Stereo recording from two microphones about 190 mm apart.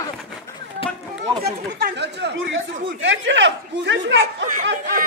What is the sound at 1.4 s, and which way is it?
Speech, 60° right (ahead or behind).